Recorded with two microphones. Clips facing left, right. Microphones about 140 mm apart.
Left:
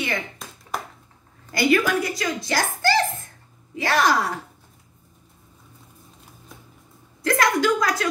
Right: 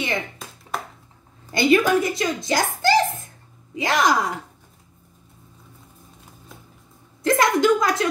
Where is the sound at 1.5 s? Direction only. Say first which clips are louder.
Right 3 dB; 25° right (ahead or behind).